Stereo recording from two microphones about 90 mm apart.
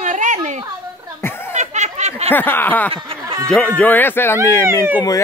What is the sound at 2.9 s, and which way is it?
Speech, 90° right.